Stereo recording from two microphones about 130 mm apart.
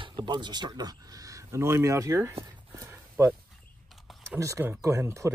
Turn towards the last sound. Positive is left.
turn(degrees=-20)  # may be behind; listen again after turning